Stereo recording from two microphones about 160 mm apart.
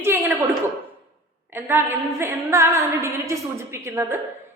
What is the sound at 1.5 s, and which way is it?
A woman's voice, 15° right (ahead or behind).